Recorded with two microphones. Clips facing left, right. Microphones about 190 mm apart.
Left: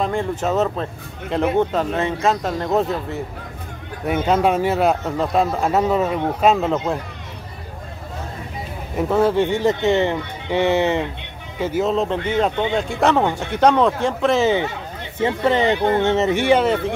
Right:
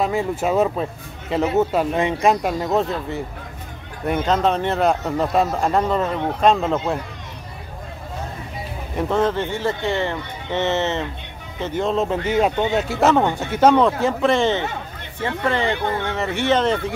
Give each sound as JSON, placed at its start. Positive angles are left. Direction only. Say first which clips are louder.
{"t": 0.0, "sound": "speech", "louder": "right 1 dB", "side_deg": -5}
{"t": 2.7, "sound": "speech", "louder": "left 4 dB", "side_deg": 0}
{"t": 8.9, "sound": "speech", "louder": "left 3 dB", "side_deg": 10}
{"t": 15.1, "sound": "speech", "louder": "left 4 dB", "side_deg": 20}